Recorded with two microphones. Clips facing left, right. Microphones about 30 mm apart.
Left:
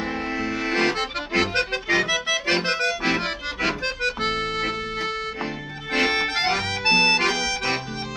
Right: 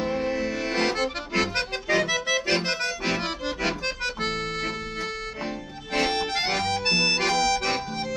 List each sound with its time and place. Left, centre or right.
0.0 s accordion: centre
7.4 s music: centre